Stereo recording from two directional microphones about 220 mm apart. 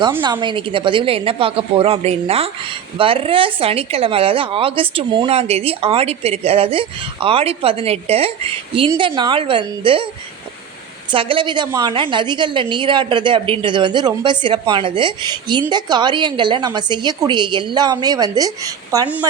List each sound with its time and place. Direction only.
0.2 s speech: 20° right (ahead or behind)
11.1 s speech: 25° right (ahead or behind)